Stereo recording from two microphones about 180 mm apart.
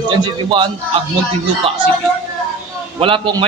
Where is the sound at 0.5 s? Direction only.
25° right (ahead or behind).